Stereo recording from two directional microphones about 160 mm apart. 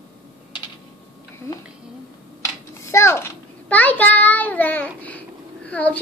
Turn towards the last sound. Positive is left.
turn(degrees=10)  # may be behind; listen again after turning